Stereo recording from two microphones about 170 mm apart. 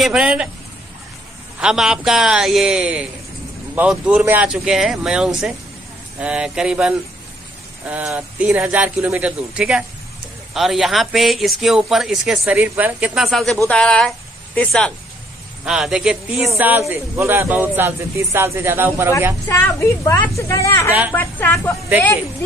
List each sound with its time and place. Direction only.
0.0 s a man's voice: 5° right (ahead or behind)
1.6 s a man's voice: 5° right (ahead or behind)
15.6 s a man's voice: 5° right (ahead or behind)
19.4 s a woman's voice: 15° left (ahead or behind)